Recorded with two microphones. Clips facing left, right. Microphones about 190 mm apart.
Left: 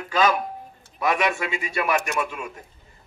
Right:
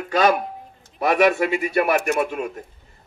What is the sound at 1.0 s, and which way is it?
A man's voice, 55° right (ahead or behind).